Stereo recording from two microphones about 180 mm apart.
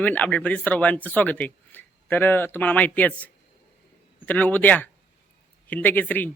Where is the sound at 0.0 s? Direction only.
10° left (ahead or behind).